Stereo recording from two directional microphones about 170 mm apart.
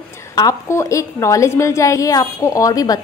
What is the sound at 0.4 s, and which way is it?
A woman's voice, 20° left (ahead or behind).